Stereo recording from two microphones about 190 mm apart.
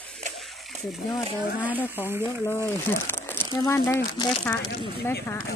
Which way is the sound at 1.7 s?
10° left (ahead or behind).